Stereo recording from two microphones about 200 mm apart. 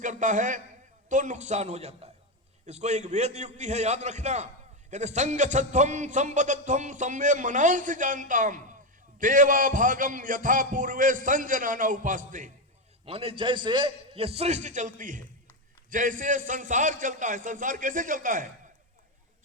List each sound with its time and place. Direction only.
0.0 s a man's voice: 40° right (ahead or behind)
13.1 s a man's voice: 30° right (ahead or behind)